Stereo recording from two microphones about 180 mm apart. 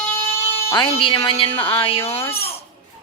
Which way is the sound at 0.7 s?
30° left (ahead or behind).